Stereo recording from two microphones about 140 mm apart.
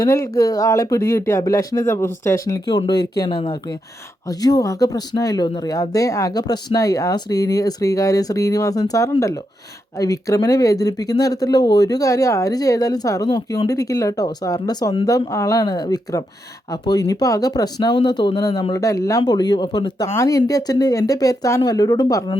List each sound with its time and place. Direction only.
0.0 s speech: 25° left (ahead or behind)
2.6 s speech: 30° left (ahead or behind)
20.1 s speech: 20° left (ahead or behind)